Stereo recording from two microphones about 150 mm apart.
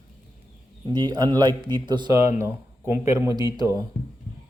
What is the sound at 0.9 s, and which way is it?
Speech, 30° right (ahead or behind).